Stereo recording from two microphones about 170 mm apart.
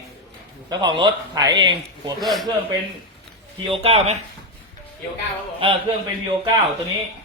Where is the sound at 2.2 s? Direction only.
Centre (ahead or behind).